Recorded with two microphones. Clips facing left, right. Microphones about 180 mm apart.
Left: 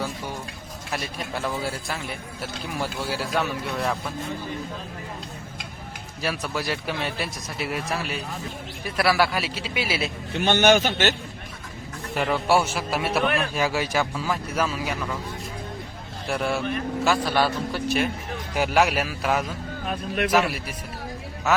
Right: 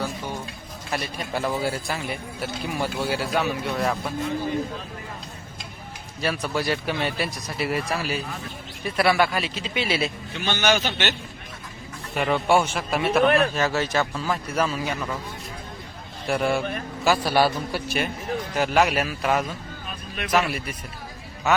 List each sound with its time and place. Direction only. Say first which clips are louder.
0.9 s speech: right 2 dB; centre (ahead or behind)
6.2 s speech: right 3 dB; centre (ahead or behind)
10.3 s speech: left 5 dB; 55° left (ahead or behind)
12.1 s speech: right 1 dB; centre (ahead or behind)
16.2 s a man's voice: right 2 dB; centre (ahead or behind)
19.9 s a sound: left 9 dB; 60° left (ahead or behind)
20.3 s speech: right 2 dB; 5° left (ahead or behind)